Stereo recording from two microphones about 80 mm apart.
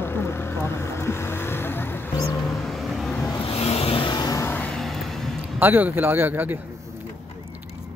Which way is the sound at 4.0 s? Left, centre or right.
Left.